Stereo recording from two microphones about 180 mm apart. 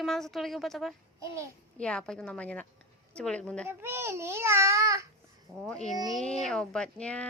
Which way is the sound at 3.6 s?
15° right (ahead or behind).